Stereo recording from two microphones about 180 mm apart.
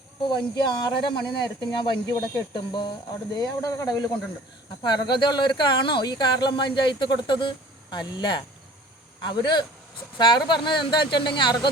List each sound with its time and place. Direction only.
0.3 s speech: 25° left (ahead or behind)